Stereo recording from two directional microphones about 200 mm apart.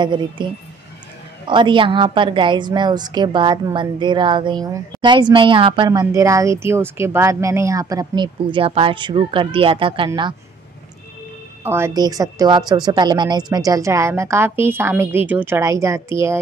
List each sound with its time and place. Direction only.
0.0 s speech: 25° right (ahead or behind)
1.5 s speech: 25° right (ahead or behind)
11.6 s a woman's voice: 10° right (ahead or behind)